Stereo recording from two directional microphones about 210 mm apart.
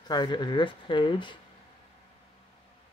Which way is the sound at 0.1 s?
20° left (ahead or behind).